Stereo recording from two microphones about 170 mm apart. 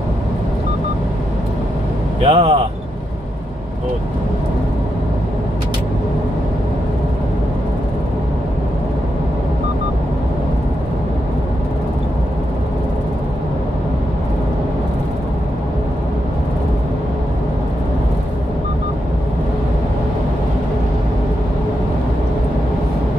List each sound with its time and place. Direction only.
2.2 s speech: 35° right (ahead or behind)